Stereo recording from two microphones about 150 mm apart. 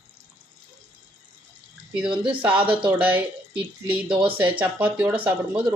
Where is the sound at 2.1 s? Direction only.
35° right (ahead or behind).